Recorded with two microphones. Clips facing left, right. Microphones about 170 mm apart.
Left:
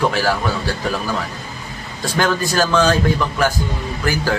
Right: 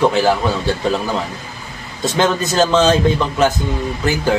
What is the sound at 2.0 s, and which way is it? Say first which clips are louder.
Speech: right 2 dB; 20° right (ahead or behind).